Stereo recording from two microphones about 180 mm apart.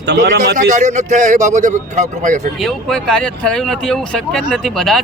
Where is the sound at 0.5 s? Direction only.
40° right (ahead or behind).